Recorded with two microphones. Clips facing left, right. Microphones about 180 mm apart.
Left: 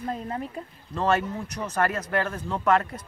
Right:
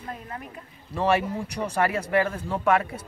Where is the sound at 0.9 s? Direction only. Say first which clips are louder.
Right 1 dB; 10° right (ahead or behind).